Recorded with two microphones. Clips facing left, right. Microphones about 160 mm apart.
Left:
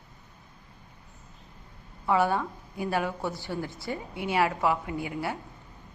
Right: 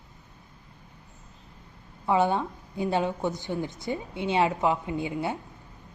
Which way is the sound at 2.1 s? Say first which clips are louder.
Right 1 dB; 20° right (ahead or behind).